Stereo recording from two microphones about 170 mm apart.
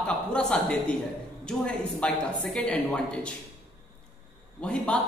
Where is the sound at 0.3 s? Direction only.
5° left (ahead or behind).